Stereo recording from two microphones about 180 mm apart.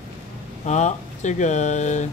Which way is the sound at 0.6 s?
40° left (ahead or behind).